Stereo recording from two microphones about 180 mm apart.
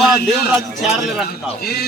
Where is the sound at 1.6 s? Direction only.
60° left (ahead or behind).